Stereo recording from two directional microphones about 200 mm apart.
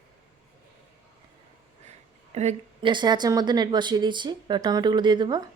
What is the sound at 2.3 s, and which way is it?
A woman's voice, 35° right (ahead or behind).